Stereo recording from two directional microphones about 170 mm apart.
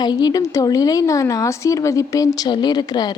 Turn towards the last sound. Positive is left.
turn(degrees=25)  # may be behind; listen again after turning